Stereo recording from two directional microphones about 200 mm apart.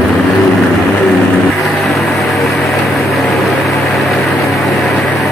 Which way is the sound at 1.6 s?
Centre (ahead or behind).